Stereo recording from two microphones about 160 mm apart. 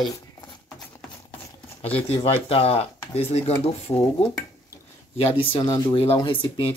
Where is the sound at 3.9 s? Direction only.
20° left (ahead or behind).